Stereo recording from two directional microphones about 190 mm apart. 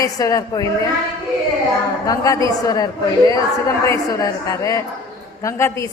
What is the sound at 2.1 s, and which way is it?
A woman's voice, 15° left (ahead or behind).